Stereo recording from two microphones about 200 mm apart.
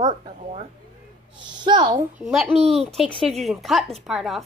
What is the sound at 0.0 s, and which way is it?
A woman's voice, 30° right (ahead or behind).